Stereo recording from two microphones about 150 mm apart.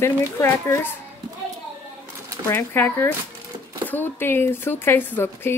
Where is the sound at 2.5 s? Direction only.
15° left (ahead or behind).